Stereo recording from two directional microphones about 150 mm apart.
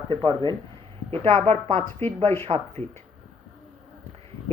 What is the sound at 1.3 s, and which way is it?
Speech, 45° right (ahead or behind).